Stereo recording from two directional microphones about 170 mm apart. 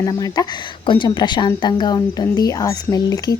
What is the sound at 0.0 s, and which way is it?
Speech, 20° left (ahead or behind).